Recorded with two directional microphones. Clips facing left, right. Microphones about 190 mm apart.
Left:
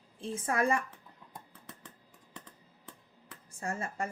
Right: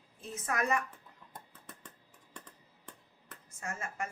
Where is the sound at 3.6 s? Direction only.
30° left (ahead or behind).